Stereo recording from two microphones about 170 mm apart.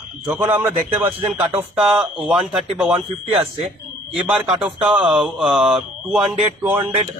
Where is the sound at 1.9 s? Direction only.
5° right (ahead or behind).